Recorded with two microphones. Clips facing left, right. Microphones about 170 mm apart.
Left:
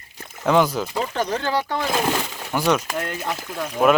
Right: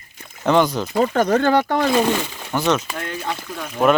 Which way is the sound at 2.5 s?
10° left (ahead or behind).